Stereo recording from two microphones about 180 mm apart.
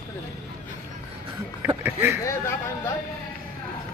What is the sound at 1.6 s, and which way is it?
Speech, 10° right (ahead or behind).